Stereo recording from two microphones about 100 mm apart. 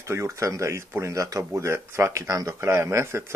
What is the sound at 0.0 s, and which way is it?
Speech, 30° right (ahead or behind).